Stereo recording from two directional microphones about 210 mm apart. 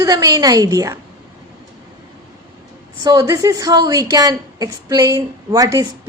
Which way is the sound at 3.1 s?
15° right (ahead or behind).